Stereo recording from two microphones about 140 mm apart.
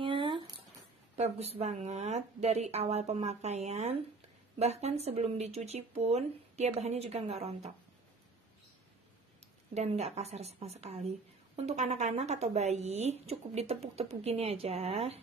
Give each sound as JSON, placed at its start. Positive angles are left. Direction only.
{"t": 0.0, "sound": "a sound", "side_deg": -35}
{"t": 1.1, "sound": "a woman's voice", "side_deg": -50}
{"t": 9.8, "sound": "a woman's voice", "side_deg": -50}